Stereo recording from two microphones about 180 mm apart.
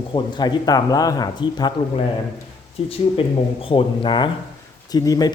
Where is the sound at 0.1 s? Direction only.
25° left (ahead or behind).